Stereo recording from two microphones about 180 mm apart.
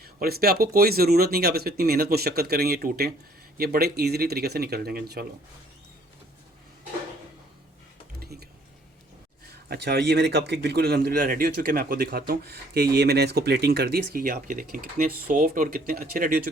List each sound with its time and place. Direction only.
0.0 s a man's voice: 55° right (ahead or behind)
8.2 s a sound: 60° right (ahead or behind)
9.6 s a man's voice: 65° right (ahead or behind)